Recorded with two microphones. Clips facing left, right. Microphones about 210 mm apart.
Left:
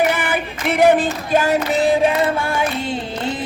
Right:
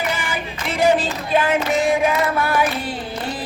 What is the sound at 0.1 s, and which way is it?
Female singing, 60° left (ahead or behind).